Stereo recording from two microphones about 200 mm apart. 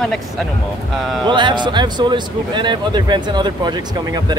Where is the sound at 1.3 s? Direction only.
25° right (ahead or behind).